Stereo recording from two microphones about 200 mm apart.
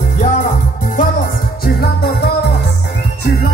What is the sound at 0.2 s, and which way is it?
Music, 40° left (ahead or behind).